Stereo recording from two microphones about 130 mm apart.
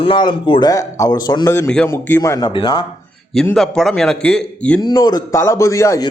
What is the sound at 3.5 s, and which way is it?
A man's voice, centre (ahead or behind).